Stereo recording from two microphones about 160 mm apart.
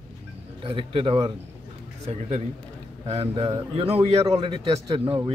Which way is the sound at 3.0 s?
35° right (ahead or behind).